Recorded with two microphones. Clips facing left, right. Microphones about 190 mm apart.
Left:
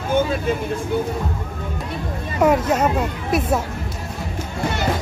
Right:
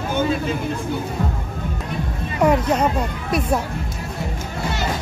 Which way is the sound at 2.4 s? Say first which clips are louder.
Left 1 dB; 5° left (ahead or behind).